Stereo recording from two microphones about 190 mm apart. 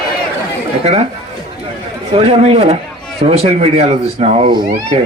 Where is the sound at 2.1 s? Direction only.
30° right (ahead or behind).